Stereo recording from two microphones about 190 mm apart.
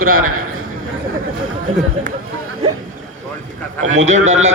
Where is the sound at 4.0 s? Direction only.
40° right (ahead or behind).